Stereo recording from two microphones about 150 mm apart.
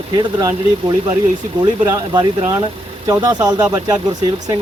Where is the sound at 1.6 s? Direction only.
25° right (ahead or behind).